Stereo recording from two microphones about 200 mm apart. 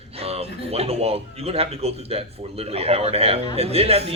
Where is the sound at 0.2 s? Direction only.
30° right (ahead or behind).